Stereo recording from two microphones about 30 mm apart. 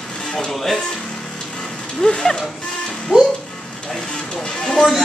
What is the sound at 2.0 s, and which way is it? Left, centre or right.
Speech, left.